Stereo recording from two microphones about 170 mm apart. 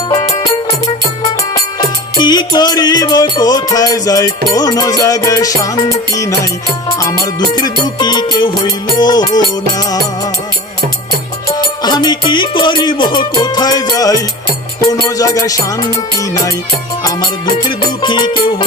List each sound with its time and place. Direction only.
2.1 s music: 25° left (ahead or behind)
11.8 s music: 25° left (ahead or behind)